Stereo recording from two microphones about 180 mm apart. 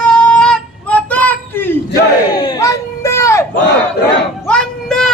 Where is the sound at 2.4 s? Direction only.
20° left (ahead or behind).